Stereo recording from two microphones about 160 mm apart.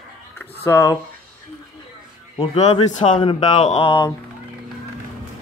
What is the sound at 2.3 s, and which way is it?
Speech, 40° left (ahead or behind).